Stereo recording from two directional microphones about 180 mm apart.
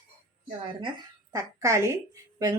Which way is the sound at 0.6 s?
30° right (ahead or behind).